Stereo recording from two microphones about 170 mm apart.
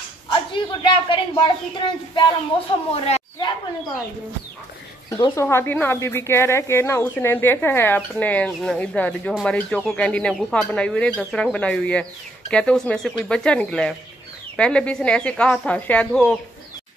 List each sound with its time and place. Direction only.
0.3 s a woman's voice: 30° left (ahead or behind)
2.5 s speech: 30° left (ahead or behind)
5.1 s speech: 15° left (ahead or behind)